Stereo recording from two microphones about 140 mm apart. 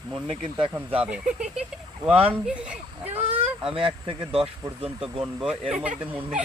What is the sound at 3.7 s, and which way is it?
Speech, 40° right (ahead or behind).